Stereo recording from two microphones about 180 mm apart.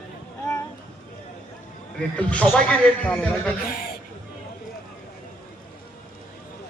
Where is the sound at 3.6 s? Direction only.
55° left (ahead or behind).